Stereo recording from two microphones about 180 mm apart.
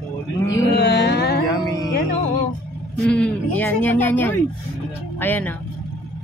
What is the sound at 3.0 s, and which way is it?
A man's voice, 5° left (ahead or behind).